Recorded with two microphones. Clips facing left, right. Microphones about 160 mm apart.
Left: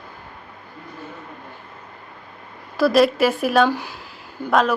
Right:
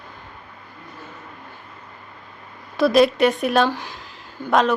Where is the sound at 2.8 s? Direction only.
Centre (ahead or behind).